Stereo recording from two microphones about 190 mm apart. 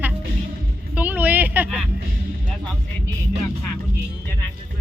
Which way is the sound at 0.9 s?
10° right (ahead or behind).